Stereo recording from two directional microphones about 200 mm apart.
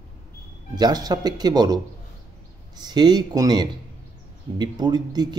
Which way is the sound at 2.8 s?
20° right (ahead or behind).